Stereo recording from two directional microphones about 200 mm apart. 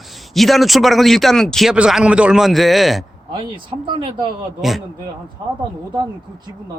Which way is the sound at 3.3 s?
25° right (ahead or behind).